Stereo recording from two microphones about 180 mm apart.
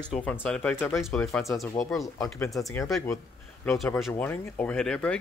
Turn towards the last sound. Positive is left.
turn(degrees=5)  # may be behind; listen again after turning